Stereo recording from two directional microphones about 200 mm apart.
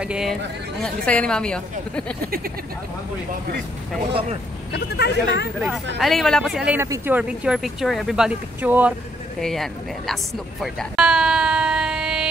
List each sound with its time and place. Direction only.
0.0 s speech: 5° right (ahead or behind)
4.7 s speech: 55° left (ahead or behind)
5.9 s speech: centre (ahead or behind)
9.4 s speech: centre (ahead or behind)
10.6 s a sound: centre (ahead or behind)